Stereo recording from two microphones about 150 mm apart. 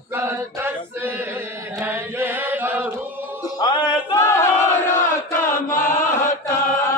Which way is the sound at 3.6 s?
30° left (ahead or behind).